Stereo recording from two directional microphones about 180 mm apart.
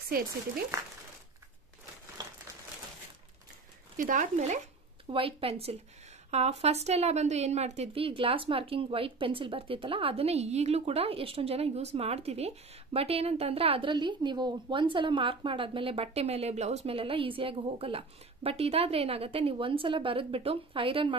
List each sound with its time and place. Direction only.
3.9 s speech: 45° right (ahead or behind)
5.1 s a woman's voice: 30° right (ahead or behind)